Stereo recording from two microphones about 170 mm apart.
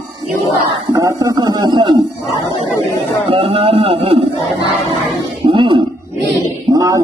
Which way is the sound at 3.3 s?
30° right (ahead or behind).